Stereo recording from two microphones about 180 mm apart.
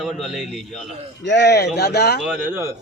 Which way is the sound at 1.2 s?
75° left (ahead or behind).